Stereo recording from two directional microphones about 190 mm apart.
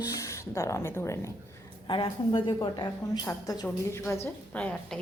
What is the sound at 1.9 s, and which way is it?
Speech, 25° left (ahead or behind).